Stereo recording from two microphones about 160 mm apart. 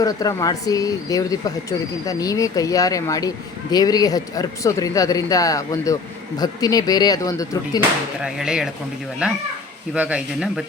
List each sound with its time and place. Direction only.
0.0 s speech: 25° left (ahead or behind)
8.2 s speech: 5° right (ahead or behind)
9.9 s speech: 5° right (ahead or behind)